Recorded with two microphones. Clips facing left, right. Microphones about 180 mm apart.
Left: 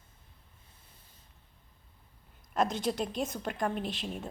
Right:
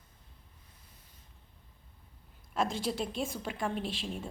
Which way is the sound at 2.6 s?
45° left (ahead or behind).